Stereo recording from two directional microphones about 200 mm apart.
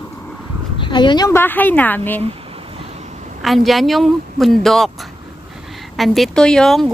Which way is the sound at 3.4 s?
Centre (ahead or behind).